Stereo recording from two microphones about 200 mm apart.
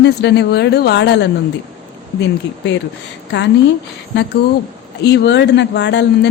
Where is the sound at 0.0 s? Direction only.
60° left (ahead or behind).